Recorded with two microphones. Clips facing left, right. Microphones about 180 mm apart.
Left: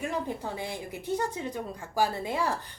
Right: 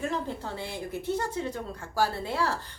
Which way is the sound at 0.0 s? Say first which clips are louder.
Even; 15° left (ahead or behind).